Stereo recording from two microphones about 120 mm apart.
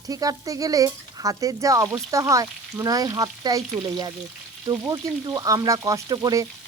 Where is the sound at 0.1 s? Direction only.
30° right (ahead or behind).